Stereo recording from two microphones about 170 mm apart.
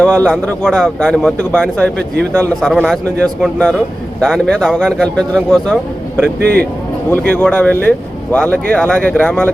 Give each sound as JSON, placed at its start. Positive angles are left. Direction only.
{"t": 0.0, "sound": "a man's voice", "side_deg": 5}
{"t": 6.4, "sound": "a man's voice", "side_deg": -70}
{"t": 7.1, "sound": "speech", "side_deg": 10}